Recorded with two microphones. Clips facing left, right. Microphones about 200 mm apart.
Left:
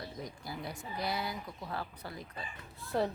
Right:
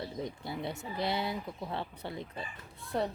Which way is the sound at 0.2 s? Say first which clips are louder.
Right 5 dB; 25° right (ahead or behind).